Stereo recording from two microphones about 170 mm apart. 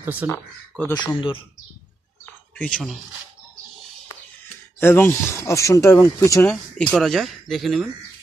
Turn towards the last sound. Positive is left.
turn(degrees=0)  # may be behind; listen again after turning